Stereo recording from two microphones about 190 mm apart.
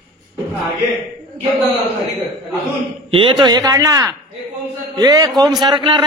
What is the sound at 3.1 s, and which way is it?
A man's voice, 25° right (ahead or behind).